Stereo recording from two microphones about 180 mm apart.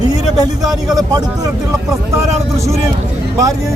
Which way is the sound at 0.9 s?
20° right (ahead or behind).